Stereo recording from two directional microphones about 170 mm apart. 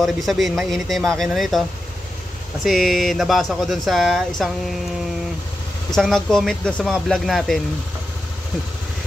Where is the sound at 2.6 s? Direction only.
Centre (ahead or behind).